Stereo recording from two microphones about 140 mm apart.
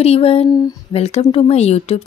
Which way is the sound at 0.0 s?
45° left (ahead or behind).